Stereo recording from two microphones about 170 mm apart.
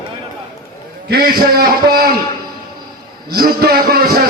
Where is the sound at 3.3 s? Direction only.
65° right (ahead or behind).